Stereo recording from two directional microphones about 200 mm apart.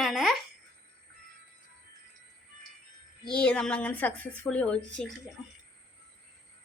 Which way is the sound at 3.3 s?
5° left (ahead or behind).